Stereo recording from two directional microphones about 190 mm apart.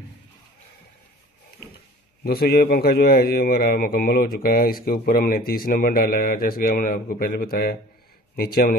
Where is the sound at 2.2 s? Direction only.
55° left (ahead or behind).